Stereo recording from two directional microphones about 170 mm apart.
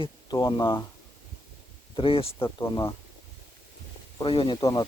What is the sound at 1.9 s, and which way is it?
Speech, 30° left (ahead or behind).